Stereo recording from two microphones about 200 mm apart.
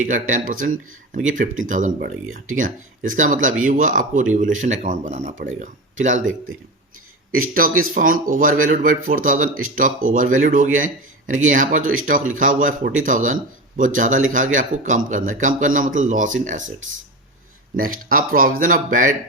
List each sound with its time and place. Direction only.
0.0 s a man's voice: 40° right (ahead or behind)
7.3 s a man's voice: 45° right (ahead or behind)
17.7 s speech: 45° right (ahead or behind)